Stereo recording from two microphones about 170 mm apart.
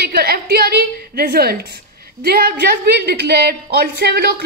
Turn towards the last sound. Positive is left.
turn(degrees=-75)  # may be behind; listen again after turning